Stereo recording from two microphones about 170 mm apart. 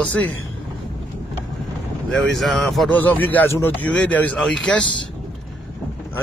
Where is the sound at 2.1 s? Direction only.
5° left (ahead or behind).